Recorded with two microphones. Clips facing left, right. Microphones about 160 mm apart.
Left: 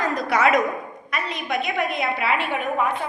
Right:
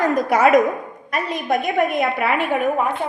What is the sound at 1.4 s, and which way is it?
A woman's voice, 40° right (ahead or behind).